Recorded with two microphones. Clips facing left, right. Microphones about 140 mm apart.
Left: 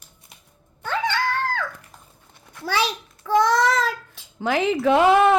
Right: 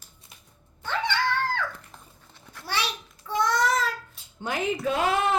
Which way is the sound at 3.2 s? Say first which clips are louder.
Left 6 dB; 90° left.